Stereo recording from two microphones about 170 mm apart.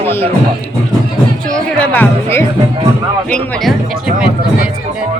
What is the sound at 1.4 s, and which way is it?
Speech, 5° left (ahead or behind).